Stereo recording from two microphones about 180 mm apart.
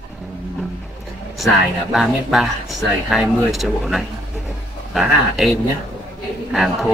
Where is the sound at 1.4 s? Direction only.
Centre (ahead or behind).